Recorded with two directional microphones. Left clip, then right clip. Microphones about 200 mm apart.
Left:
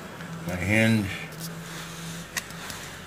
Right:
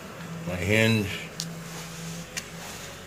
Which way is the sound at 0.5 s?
25° right (ahead or behind).